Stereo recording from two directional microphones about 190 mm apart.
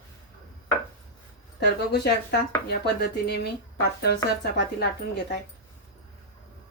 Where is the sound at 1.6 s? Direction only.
60° left (ahead or behind).